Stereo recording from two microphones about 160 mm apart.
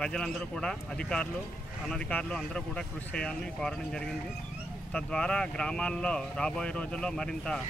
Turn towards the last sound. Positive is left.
turn(degrees=5)  # may be behind; listen again after turning